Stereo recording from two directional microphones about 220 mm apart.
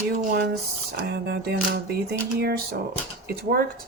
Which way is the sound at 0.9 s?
45° right (ahead or behind).